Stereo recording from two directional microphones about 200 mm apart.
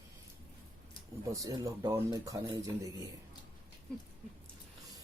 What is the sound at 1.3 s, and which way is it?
Speech, 15° right (ahead or behind).